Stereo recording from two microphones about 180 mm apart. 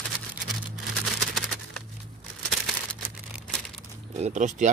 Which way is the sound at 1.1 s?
Centre (ahead or behind).